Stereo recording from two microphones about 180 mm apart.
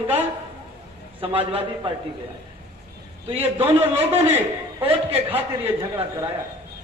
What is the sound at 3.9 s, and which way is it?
A man's voice, 10° right (ahead or behind).